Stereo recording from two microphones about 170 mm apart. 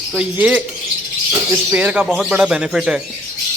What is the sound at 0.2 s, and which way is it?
Speech, 10° right (ahead or behind).